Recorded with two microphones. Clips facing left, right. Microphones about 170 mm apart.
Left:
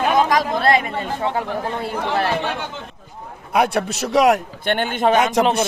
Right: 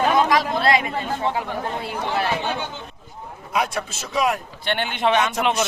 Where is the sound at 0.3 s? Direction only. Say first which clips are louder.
Left 2 dB; 45° left (ahead or behind).